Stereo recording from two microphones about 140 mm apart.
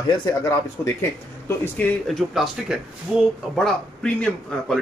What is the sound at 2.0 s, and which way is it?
A man's voice, centre (ahead or behind).